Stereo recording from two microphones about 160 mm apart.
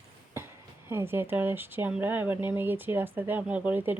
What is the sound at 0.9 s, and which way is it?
Speech, 15° right (ahead or behind).